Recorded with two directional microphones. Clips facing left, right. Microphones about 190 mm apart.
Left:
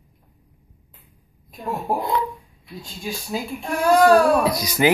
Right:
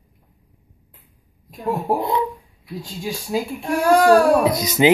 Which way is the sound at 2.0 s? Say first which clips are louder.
Right 2 dB; 20° right (ahead or behind).